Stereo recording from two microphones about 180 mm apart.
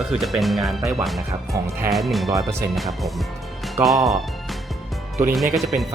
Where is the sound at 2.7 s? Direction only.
Centre (ahead or behind).